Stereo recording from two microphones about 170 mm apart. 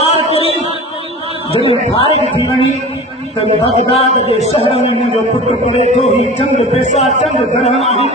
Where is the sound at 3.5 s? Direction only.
35° left (ahead or behind).